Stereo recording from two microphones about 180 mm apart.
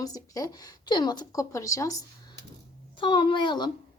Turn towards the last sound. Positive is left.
turn(degrees=25)  # may be behind; listen again after turning